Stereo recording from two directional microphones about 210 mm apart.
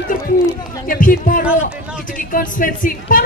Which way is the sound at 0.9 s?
40° left (ahead or behind).